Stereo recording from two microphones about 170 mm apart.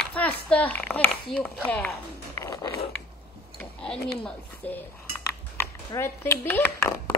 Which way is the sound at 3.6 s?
5° left (ahead or behind).